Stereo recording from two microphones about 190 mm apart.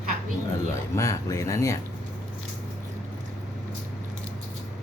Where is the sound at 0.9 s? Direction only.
15° left (ahead or behind).